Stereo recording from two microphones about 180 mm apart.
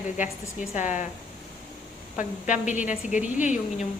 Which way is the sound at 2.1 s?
45° left (ahead or behind).